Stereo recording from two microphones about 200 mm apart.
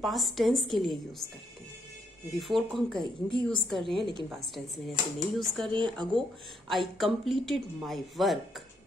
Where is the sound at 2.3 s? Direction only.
Centre (ahead or behind).